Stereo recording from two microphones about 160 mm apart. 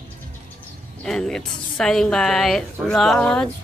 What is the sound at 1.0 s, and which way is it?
A woman's voice, 5° left (ahead or behind).